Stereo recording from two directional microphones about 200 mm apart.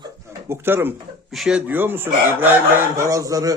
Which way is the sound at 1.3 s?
Centre (ahead or behind).